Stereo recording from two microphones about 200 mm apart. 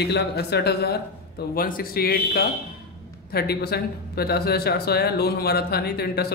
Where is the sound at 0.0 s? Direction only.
55° left (ahead or behind).